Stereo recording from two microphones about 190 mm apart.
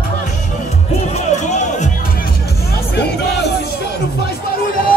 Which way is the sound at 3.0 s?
60° left (ahead or behind).